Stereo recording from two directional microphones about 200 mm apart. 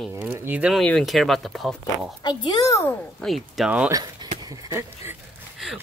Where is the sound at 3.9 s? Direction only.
20° right (ahead or behind).